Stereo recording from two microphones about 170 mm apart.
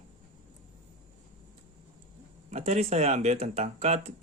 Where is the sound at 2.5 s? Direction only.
40° right (ahead or behind).